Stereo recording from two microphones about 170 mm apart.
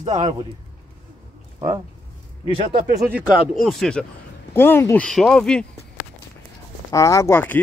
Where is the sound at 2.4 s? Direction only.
30° right (ahead or behind).